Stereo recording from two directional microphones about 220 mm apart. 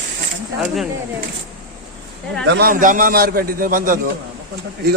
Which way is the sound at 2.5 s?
45° right (ahead or behind).